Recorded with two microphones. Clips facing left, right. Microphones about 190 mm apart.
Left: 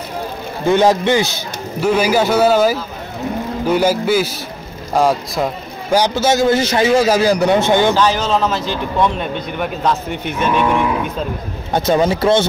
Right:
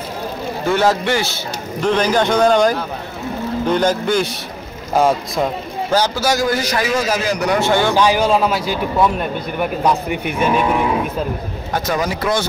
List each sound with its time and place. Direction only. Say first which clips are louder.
0.7 s a man's voice: left 4 dB; 20° left (ahead or behind); by 5.5 s centre (ahead or behind)
5.9 s a man's voice: left 3 dB; 15° left (ahead or behind)
7.9 s speech: right 1 dB; 10° right (ahead or behind)
11.7 s a man's voice: left 6 dB; 25° left (ahead or behind)